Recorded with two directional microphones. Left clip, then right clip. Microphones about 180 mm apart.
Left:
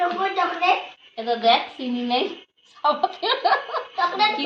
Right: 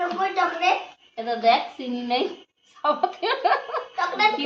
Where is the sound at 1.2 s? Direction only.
25° right (ahead or behind).